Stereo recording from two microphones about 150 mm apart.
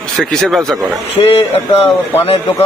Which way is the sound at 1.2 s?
35° left (ahead or behind).